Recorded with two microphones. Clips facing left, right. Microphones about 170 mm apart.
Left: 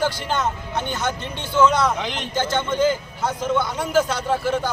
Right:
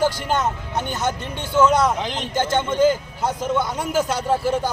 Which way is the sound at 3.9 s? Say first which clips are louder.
Left 1 dB; 40° right (ahead or behind).